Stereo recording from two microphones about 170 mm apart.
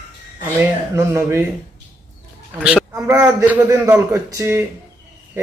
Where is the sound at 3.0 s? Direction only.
15° right (ahead or behind).